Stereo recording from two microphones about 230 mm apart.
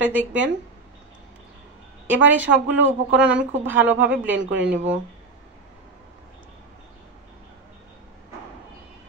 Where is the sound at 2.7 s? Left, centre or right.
Right.